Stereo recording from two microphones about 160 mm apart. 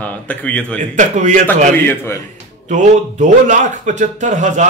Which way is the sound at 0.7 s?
50° right (ahead or behind).